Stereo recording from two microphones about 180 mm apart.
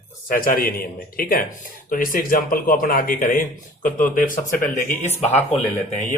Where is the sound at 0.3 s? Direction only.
50° left (ahead or behind).